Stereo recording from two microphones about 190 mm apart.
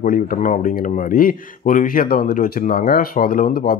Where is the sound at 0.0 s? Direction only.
45° left (ahead or behind).